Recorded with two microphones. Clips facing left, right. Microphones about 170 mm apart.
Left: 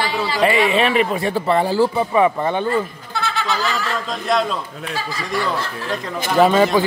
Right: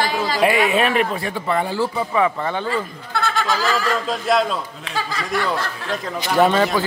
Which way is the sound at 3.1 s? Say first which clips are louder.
Right 1 dB; 50° right (ahead or behind).